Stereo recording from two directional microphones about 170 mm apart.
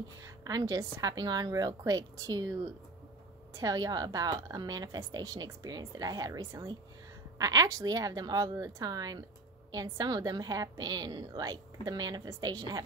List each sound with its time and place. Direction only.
0.4 s a woman's voice: 20° right (ahead or behind)
3.5 s a woman's voice: 20° right (ahead or behind)